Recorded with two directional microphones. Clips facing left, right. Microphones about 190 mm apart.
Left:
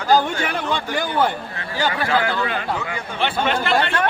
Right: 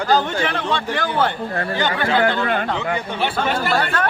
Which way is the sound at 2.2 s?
50° right (ahead or behind).